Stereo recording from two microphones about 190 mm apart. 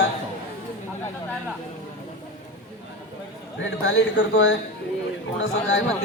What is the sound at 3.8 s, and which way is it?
Speech, 80° left.